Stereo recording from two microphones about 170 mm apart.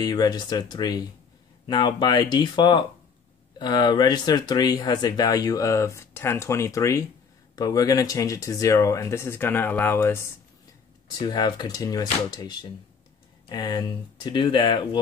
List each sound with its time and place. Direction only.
0.0 s speech: 25° left (ahead or behind)